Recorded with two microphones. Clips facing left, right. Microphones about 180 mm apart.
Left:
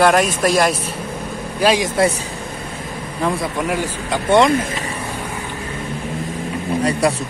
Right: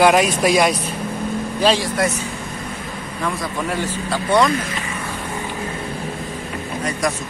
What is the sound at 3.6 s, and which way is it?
Speech, 10° left (ahead or behind).